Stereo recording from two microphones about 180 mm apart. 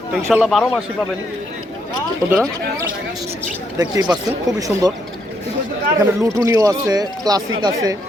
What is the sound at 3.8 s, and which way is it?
Speech, 20° right (ahead or behind).